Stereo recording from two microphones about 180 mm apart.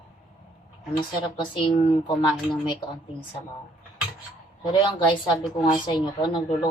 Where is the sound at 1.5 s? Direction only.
25° left (ahead or behind).